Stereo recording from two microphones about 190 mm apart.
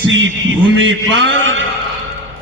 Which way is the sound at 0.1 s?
80° right.